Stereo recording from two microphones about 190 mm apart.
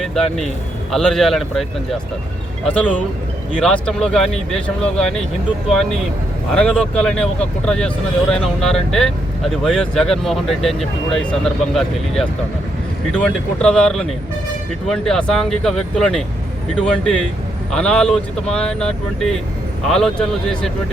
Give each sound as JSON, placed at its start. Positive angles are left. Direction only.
{"t": 0.0, "sound": "speech", "side_deg": 0}
{"t": 6.5, "sound": "speech", "side_deg": 5}